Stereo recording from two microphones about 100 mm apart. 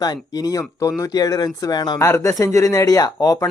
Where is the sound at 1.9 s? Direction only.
30° left (ahead or behind).